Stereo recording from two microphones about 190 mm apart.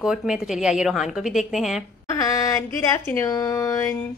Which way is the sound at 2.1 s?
15° left (ahead or behind).